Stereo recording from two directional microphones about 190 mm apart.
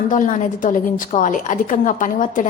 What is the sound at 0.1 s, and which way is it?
A woman's voice, 40° left (ahead or behind).